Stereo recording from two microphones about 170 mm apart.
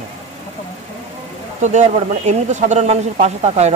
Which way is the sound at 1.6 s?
45° right (ahead or behind).